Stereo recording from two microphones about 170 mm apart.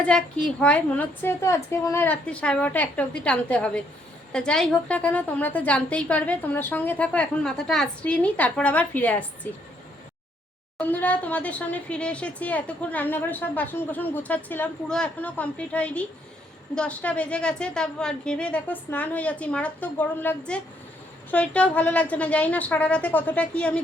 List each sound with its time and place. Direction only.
0.0 s speech: 5° left (ahead or behind)
10.8 s speech: 10° left (ahead or behind)